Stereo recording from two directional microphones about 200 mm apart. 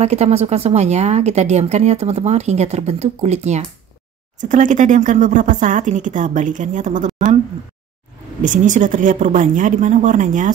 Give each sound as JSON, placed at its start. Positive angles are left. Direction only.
{"t": 0.0, "sound": "a woman's voice", "side_deg": -35}
{"t": 8.4, "sound": "a woman's voice", "side_deg": -40}